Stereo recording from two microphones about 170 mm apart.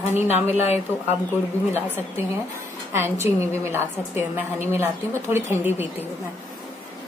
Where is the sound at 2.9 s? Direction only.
15° right (ahead or behind).